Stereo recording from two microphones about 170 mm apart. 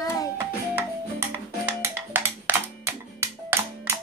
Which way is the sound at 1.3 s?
10° right (ahead or behind).